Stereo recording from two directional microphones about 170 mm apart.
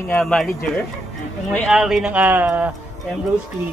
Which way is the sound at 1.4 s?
Centre (ahead or behind).